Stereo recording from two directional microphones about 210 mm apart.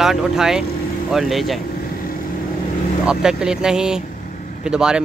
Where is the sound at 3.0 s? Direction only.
5° right (ahead or behind).